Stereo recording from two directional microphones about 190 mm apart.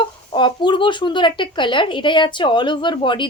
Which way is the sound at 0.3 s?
25° left (ahead or behind).